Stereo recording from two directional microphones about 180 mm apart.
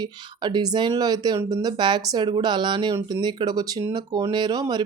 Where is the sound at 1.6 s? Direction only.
25° right (ahead or behind).